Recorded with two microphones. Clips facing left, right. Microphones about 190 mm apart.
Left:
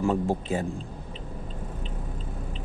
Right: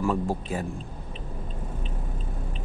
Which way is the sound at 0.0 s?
25° left (ahead or behind).